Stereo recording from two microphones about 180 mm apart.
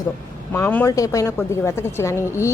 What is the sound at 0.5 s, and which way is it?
A woman's voice, 10° left (ahead or behind).